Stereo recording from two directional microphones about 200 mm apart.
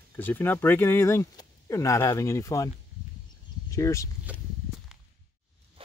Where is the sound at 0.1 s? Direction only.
10° left (ahead or behind).